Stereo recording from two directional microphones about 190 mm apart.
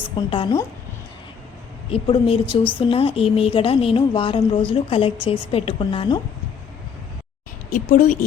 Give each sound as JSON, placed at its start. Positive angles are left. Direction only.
{"t": 0.3, "sound": "a woman's voice", "side_deg": 25}
{"t": 1.9, "sound": "a woman's voice", "side_deg": 30}
{"t": 7.7, "sound": "speech", "side_deg": 40}